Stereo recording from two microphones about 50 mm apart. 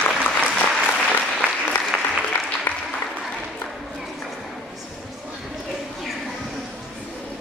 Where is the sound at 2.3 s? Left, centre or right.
Left.